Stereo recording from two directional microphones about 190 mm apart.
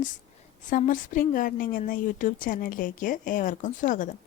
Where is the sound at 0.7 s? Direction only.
45° left (ahead or behind).